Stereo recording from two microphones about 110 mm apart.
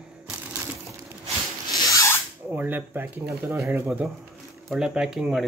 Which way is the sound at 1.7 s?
30° left (ahead or behind).